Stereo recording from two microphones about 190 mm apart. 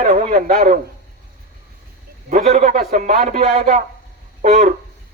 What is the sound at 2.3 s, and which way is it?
A man's voice, 40° right (ahead or behind).